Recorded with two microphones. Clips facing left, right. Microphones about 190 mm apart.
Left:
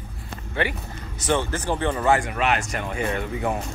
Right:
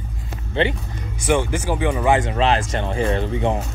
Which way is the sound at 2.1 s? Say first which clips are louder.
Right 5 dB; 25° right (ahead or behind).